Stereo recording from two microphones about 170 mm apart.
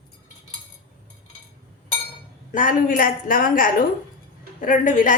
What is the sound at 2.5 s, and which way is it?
A woman's voice, 50° left (ahead or behind).